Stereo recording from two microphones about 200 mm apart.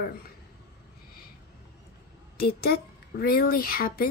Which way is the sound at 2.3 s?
50° left (ahead or behind).